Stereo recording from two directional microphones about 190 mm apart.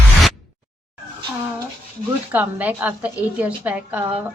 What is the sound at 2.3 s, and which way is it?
A woman's voice, 10° right (ahead or behind).